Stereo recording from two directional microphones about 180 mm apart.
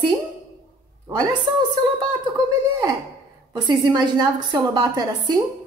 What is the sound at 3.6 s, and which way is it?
A woman's voice, 25° right (ahead or behind).